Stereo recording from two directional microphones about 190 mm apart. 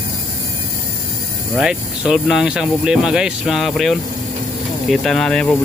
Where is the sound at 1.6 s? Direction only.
5° right (ahead or behind).